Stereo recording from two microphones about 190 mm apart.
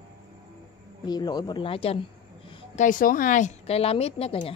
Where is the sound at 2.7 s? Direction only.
45° left (ahead or behind).